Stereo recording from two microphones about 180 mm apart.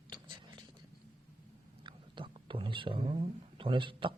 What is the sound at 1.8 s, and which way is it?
Speech, 30° right (ahead or behind).